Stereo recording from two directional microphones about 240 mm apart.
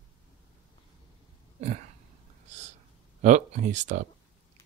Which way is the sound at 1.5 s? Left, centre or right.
Right.